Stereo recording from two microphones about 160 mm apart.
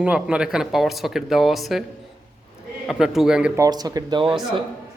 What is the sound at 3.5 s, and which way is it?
Speech, 25° right (ahead or behind).